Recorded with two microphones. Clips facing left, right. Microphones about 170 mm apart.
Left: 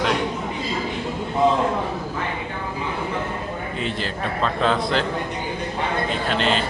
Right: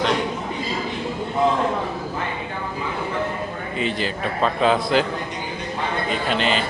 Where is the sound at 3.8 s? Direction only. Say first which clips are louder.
Right 4 dB; centre (ahead or behind).